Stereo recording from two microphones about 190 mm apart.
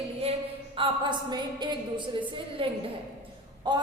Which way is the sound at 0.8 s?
30° right (ahead or behind).